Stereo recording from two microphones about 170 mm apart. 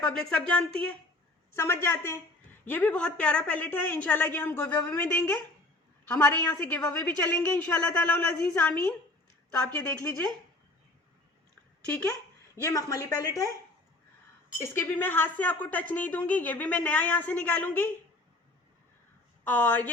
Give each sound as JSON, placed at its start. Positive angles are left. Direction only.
{"t": 0.0, "sound": "a woman's voice", "side_deg": 5}
{"t": 12.6, "sound": "speech", "side_deg": 20}
{"t": 14.6, "sound": "a woman's voice", "side_deg": 15}
{"t": 19.5, "sound": "a woman's voice", "side_deg": 10}